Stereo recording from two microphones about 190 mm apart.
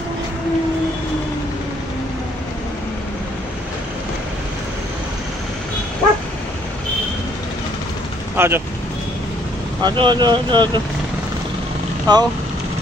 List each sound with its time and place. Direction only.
8.4 s speech: 10° right (ahead or behind)
9.8 s speech: 25° right (ahead or behind)
12.1 s speech: 20° right (ahead or behind)